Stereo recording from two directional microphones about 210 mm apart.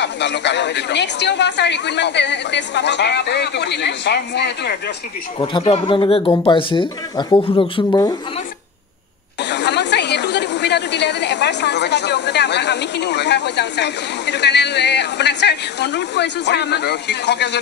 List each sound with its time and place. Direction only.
0.0 s a woman's voice: 55° left (ahead or behind)
5.4 s speech: 25° left (ahead or behind)
9.4 s a woman's voice: 55° left (ahead or behind)